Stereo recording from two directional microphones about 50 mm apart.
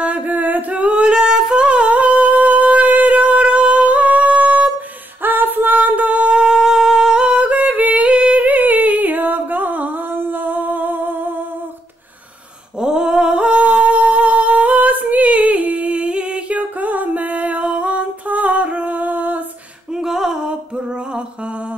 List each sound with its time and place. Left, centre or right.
0.0 s singing: right
12.8 s humming: centre
16.9 s music: right
20.0 s music: centre